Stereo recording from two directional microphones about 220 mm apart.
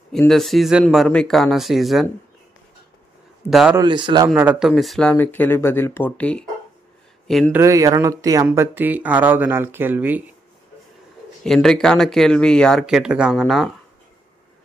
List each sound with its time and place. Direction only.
0.1 s speech: centre (ahead or behind)
3.4 s speech: centre (ahead or behind)
3.7 s a man's voice: 20° right (ahead or behind)
4.3 s speech: 5° right (ahead or behind)
7.5 s speech: 15° right (ahead or behind)
11.4 s speech: centre (ahead or behind)